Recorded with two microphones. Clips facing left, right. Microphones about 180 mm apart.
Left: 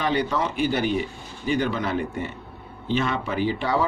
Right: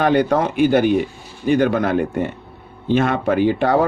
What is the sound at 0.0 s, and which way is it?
Speech, 55° right (ahead or behind).